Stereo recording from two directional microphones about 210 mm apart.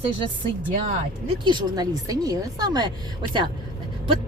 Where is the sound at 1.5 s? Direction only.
20° right (ahead or behind).